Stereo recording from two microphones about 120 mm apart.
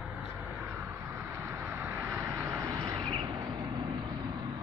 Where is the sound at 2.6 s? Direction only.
35° right (ahead or behind).